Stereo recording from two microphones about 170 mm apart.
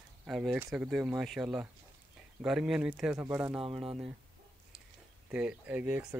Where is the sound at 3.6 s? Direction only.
30° right (ahead or behind).